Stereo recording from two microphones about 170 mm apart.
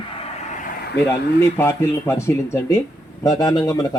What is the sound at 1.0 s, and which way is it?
Speech, 15° left (ahead or behind).